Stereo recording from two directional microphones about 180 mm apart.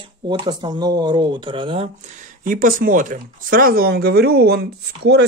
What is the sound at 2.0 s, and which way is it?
Speech, 50° right (ahead or behind).